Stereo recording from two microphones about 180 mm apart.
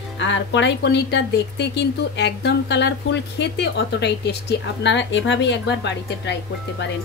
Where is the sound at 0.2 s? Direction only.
90° left; by 6.3 s 75° left (ahead or behind).